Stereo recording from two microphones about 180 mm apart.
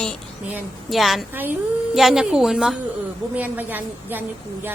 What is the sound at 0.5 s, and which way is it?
Speech, centre (ahead or behind).